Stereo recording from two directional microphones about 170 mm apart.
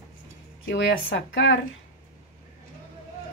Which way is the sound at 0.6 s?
90° left.